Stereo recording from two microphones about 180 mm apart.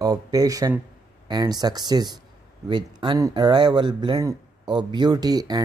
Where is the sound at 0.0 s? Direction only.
20° right (ahead or behind).